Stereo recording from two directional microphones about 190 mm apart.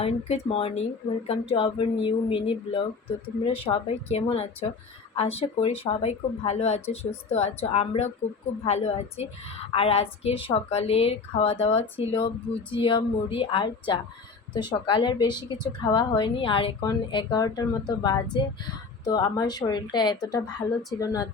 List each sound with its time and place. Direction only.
0.0 s a woman's voice: 30° left (ahead or behind)